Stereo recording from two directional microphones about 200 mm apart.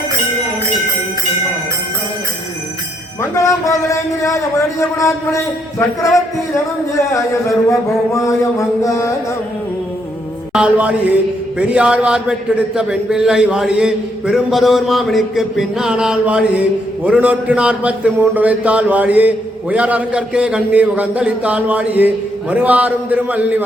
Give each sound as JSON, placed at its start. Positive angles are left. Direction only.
{"t": 3.2, "sound": "a man's voice", "side_deg": 15}
{"t": 10.5, "sound": "a man's voice", "side_deg": -5}